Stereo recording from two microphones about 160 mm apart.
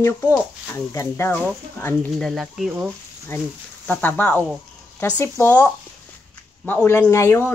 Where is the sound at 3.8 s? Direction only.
10° left (ahead or behind).